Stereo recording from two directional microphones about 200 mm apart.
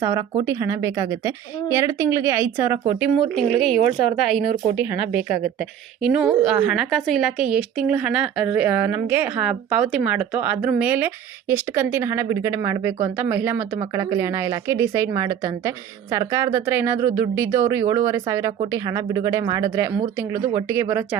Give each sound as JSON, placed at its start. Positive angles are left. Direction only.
{"t": 0.0, "sound": "a woman's voice", "side_deg": -15}